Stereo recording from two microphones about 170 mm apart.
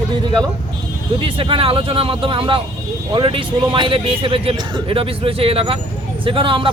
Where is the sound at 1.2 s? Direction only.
30° right (ahead or behind).